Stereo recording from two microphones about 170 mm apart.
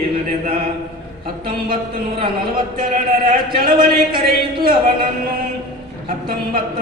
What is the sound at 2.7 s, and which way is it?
A man's voice, 55° right (ahead or behind).